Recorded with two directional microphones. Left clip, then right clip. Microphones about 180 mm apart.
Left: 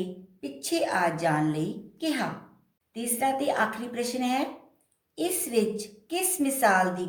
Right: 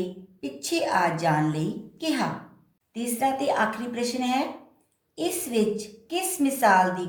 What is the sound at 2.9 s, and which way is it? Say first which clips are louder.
A woman's voice: right 2 dB; 15° left (ahead or behind).